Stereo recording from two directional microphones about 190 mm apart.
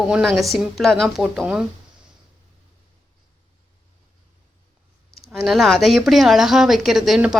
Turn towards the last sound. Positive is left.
turn(degrees=0)  # may be behind; listen again after turning